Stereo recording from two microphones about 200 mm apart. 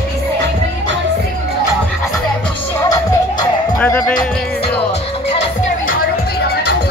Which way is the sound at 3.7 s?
5° left (ahead or behind).